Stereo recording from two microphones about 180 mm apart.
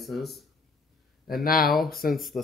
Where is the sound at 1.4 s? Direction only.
50° left (ahead or behind).